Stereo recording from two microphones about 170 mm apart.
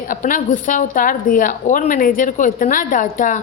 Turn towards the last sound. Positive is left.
turn(degrees=50)  # may be behind; listen again after turning